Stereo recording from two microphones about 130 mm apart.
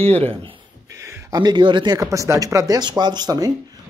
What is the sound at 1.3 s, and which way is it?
A man's voice, 35° right (ahead or behind).